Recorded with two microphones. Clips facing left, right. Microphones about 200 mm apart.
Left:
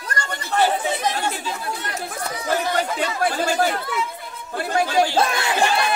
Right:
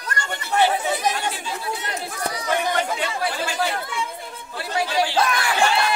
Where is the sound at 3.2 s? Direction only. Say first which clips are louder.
Left 6 dB; 50° left (ahead or behind).